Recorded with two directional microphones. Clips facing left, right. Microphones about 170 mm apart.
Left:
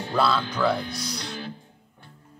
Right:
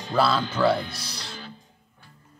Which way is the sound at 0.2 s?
5° right (ahead or behind).